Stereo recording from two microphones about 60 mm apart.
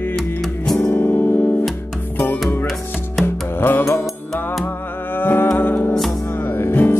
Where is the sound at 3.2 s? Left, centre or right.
Left.